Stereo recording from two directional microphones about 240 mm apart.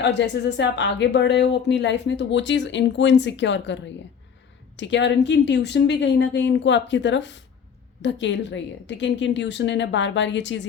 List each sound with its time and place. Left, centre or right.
0.0 s speech: left
4.8 s speech: left